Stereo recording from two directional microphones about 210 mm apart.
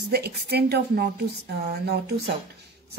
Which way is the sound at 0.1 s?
50° right (ahead or behind).